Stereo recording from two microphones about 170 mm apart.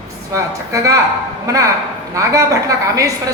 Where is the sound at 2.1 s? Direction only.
20° right (ahead or behind).